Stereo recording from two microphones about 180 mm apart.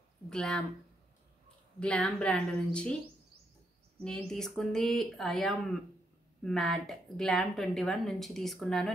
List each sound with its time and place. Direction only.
0.3 s a woman's voice: 5° left (ahead or behind)
1.8 s a woman's voice: 5° left (ahead or behind)
4.0 s a woman's voice: 5° left (ahead or behind)